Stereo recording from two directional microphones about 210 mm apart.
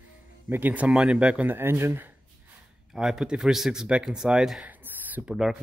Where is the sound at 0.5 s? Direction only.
10° right (ahead or behind).